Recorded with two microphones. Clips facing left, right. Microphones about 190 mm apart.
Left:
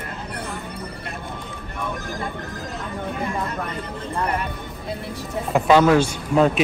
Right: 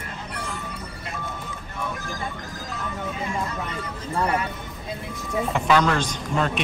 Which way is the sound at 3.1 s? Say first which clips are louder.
Left 3 dB; 55° left (ahead or behind).